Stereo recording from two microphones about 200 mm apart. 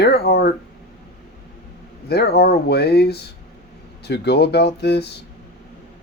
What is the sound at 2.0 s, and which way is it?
Speech, 55° left (ahead or behind).